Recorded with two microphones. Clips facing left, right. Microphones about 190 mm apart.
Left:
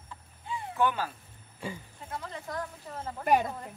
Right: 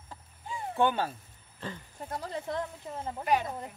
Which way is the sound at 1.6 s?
10° left (ahead or behind).